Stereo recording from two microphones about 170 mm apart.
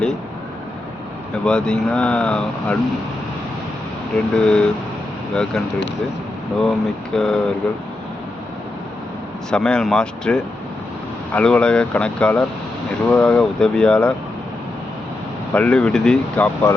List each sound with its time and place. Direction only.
1.5 s speech: 5° left (ahead or behind)
4.1 s speech: 5° left (ahead or behind)
9.5 s speech: 5° left (ahead or behind)
15.5 s speech: 5° left (ahead or behind)